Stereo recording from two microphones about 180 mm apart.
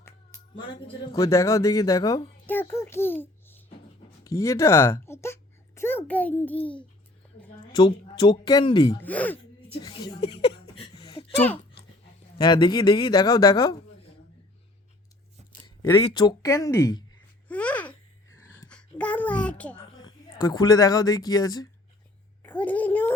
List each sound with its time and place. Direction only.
1.1 s a child's voice: 15° left (ahead or behind)
7.7 s speech: 25° left (ahead or behind)
9.0 s a child's voice: 10° left (ahead or behind)
9.9 s a sound: 25° left (ahead or behind)
12.4 s speech: 25° left (ahead or behind)
15.5 s a sound: 15° left (ahead or behind)
16.1 s speech: 20° left (ahead or behind)
17.5 s babbling: 10° left (ahead or behind)
18.3 s a sound: 15° left (ahead or behind)
20.0 s speech: 20° left (ahead or behind)
22.4 s a child's voice: 10° left (ahead or behind)